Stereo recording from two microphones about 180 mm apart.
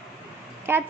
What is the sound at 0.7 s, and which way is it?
Speech, 15° right (ahead or behind).